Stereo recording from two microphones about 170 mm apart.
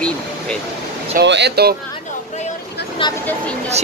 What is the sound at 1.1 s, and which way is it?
Speech, 90° right.